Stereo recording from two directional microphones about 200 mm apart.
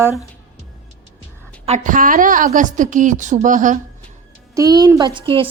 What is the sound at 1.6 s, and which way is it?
A woman's voice, 35° right (ahead or behind).